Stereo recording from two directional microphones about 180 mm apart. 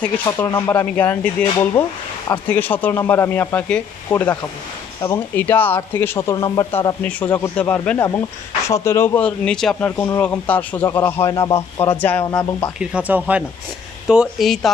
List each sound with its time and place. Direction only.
0.5 s speech: 25° left (ahead or behind)
0.7 s speech: 10° left (ahead or behind)
7.0 s speech: 10° left (ahead or behind)
12.7 s speech: 5° right (ahead or behind)